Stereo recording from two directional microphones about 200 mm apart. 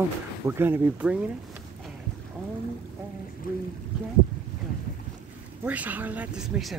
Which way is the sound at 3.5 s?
45° left (ahead or behind).